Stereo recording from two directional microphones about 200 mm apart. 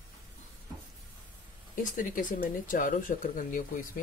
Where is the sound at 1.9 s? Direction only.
40° left (ahead or behind).